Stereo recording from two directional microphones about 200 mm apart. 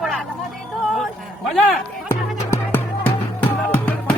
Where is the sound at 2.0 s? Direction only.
10° left (ahead or behind).